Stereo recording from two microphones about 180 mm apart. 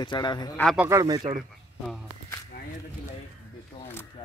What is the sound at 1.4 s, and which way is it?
Speech, centre (ahead or behind).